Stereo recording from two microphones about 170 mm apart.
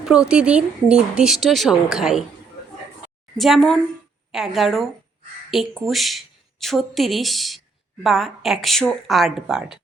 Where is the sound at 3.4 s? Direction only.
Centre (ahead or behind).